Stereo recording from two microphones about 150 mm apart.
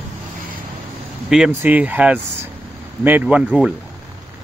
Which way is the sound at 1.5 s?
10° right (ahead or behind).